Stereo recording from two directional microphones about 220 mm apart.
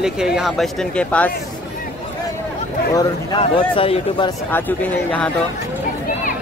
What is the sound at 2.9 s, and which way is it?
Speech, 15° left (ahead or behind).